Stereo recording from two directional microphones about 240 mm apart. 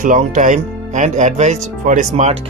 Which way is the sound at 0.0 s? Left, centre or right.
Right.